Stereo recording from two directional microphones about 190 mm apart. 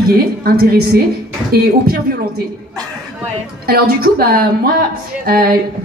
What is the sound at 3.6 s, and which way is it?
Speech, 55° right (ahead or behind).